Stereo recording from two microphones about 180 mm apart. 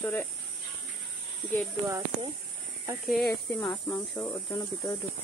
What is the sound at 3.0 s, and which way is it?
Speech, centre (ahead or behind).